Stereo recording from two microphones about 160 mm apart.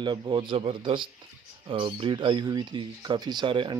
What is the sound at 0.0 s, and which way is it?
A man's voice, 30° right (ahead or behind).